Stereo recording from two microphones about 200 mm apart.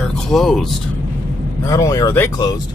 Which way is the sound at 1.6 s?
15° left (ahead or behind).